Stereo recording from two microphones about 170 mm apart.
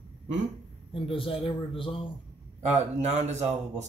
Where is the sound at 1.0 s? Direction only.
30° left (ahead or behind).